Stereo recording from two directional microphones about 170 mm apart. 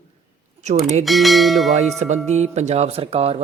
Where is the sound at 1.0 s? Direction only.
Centre (ahead or behind).